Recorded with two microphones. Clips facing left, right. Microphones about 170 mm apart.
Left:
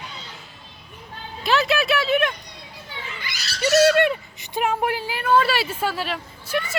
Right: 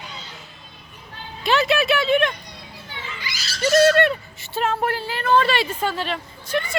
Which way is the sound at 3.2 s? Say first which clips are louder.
Right 1 dB; 55° left (ahead or behind).